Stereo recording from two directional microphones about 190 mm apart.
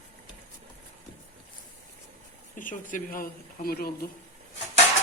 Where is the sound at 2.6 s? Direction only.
45° left (ahead or behind).